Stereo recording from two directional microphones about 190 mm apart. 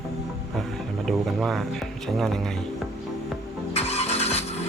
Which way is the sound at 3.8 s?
35° left (ahead or behind).